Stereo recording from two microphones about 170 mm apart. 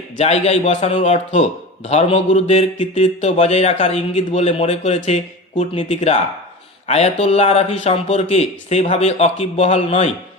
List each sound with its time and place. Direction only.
0.2 s speech: 40° left (ahead or behind)